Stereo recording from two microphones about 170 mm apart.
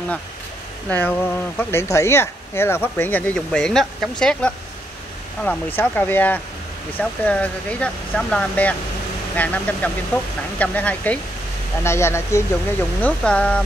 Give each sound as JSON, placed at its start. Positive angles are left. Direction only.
{"t": 0.8, "sound": "speech", "side_deg": 10}